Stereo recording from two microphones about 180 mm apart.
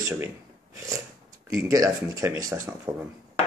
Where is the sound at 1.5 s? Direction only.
20° right (ahead or behind).